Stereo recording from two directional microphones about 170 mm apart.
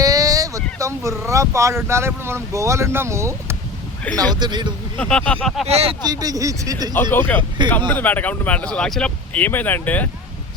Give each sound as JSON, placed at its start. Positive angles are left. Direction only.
{"t": 0.0, "sound": "speech", "side_deg": -20}
{"t": 4.4, "sound": "speech", "side_deg": -25}
{"t": 4.9, "sound": "speech", "side_deg": 5}
{"t": 5.6, "sound": "speech", "side_deg": -35}
{"t": 6.1, "sound": "speech", "side_deg": -20}
{"t": 6.9, "sound": "speech", "side_deg": 15}